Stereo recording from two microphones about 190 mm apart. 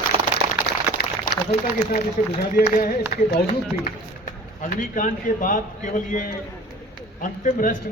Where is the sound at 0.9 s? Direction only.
50° left (ahead or behind).